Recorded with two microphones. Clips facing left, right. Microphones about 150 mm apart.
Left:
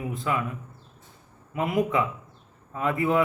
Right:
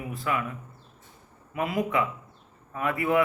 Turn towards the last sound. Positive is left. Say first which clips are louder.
# left 1 dB
turn(degrees=20)  # may be behind; listen again after turning